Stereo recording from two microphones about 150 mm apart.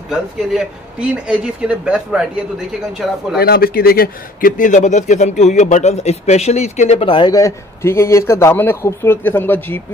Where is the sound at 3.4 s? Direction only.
90° left; by 7.4 s 35° left (ahead or behind).